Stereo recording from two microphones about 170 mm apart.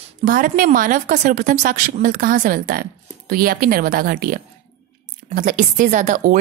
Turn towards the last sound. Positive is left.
turn(degrees=-45)  # may be behind; listen again after turning